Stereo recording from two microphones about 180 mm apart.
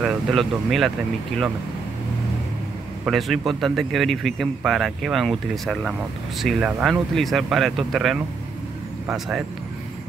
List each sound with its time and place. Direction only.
0.0 s speech: centre (ahead or behind)
3.1 s speech: centre (ahead or behind)